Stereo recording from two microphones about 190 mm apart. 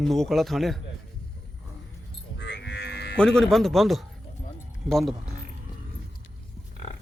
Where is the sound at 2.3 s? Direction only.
65° left (ahead or behind).